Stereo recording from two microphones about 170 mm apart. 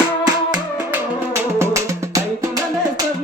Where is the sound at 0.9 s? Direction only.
15° right (ahead or behind).